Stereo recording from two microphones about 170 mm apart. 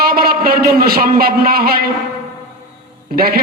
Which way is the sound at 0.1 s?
65° right (ahead or behind).